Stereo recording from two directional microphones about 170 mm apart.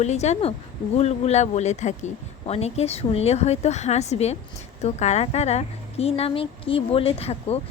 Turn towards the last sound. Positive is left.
turn(degrees=35)  # may be behind; listen again after turning